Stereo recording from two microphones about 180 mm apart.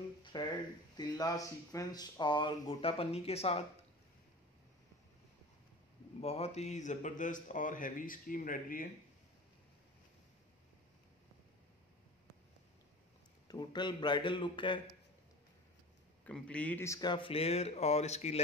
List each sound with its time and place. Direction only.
0.2 s a sound: 25° left (ahead or behind)
0.9 s speech: 20° left (ahead or behind)
6.2 s speech: 35° left (ahead or behind); by 8.8 s 50° left (ahead or behind)
13.5 s speech: 25° left (ahead or behind)
16.3 s speech: 5° left (ahead or behind); by 18.4 s 35° left (ahead or behind)